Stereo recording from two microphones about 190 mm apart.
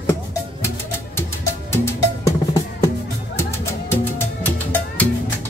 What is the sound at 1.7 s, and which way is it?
Music, 15° left (ahead or behind).